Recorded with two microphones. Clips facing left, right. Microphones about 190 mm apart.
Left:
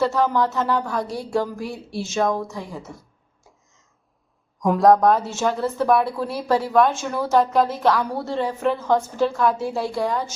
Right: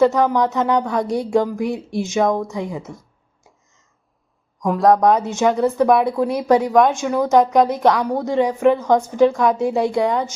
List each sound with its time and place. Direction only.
0.0 s speech: 15° right (ahead or behind)
4.6 s speech: centre (ahead or behind)
5.0 s speech: 20° right (ahead or behind)